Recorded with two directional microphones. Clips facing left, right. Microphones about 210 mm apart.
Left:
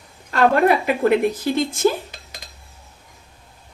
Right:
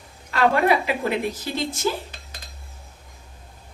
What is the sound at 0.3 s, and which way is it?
A woman's voice, 50° left (ahead or behind).